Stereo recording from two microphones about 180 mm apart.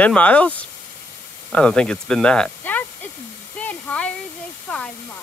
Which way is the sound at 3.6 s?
10° left (ahead or behind).